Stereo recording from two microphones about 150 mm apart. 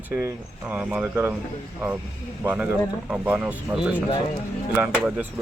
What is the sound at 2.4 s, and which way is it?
Speech, 10° right (ahead or behind).